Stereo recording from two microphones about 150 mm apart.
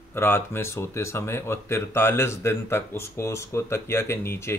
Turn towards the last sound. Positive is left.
turn(degrees=15)  # may be behind; listen again after turning